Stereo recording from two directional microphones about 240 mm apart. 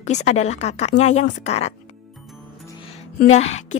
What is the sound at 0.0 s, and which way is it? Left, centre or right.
A woman's voice, left.